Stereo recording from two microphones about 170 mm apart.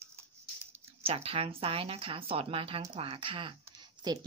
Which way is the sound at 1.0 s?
35° right (ahead or behind).